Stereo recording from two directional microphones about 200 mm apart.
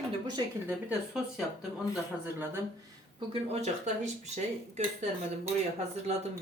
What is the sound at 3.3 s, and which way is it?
A woman's voice, 30° right (ahead or behind).